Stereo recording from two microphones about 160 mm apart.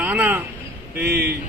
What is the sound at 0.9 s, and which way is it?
Speech, 90° right.